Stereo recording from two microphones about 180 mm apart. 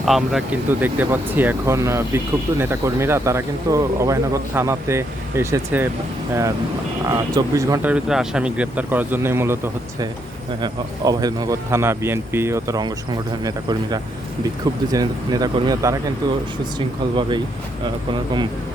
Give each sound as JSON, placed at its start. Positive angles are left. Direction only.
{"t": 0.0, "sound": "speech", "side_deg": 0}
{"t": 7.1, "sound": "speech", "side_deg": -20}
{"t": 10.6, "sound": "speech", "side_deg": -20}